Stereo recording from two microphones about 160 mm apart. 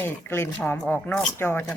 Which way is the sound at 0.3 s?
15° left (ahead or behind).